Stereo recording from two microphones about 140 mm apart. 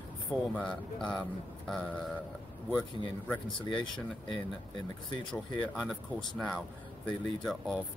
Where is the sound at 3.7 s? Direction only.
35° left (ahead or behind).